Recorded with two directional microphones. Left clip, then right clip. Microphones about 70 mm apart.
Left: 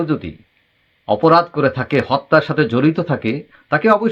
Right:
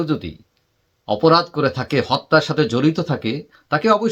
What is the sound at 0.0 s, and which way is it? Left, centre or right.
Speech, right.